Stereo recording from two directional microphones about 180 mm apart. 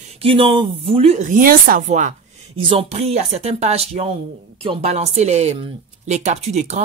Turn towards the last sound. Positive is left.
turn(degrees=-40)  # may be behind; listen again after turning